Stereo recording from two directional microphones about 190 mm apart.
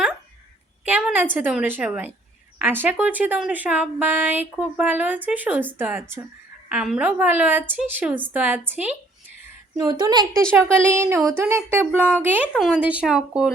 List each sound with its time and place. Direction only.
0.9 s a woman's voice: 10° right (ahead or behind)
9.7 s a woman's voice: 20° right (ahead or behind); by 13.5 s 5° right (ahead or behind)